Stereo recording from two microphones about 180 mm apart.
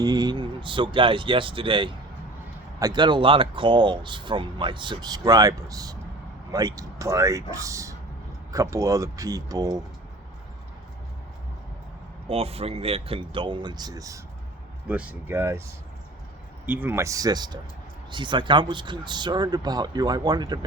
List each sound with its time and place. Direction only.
0.0 s speech: 20° right (ahead or behind)
12.3 s speech: 35° right (ahead or behind)
14.8 s speech: 10° right (ahead or behind)
16.6 s speech: 10° right (ahead or behind)